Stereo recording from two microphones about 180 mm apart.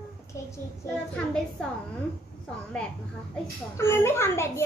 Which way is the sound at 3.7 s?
15° left (ahead or behind).